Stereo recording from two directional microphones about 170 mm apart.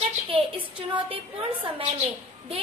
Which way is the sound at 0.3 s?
30° right (ahead or behind).